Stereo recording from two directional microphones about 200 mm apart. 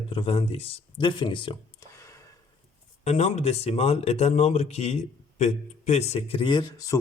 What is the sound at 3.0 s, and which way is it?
Speech, 35° left (ahead or behind).